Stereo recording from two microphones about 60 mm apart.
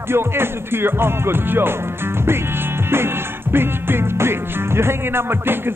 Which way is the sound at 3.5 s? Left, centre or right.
Right.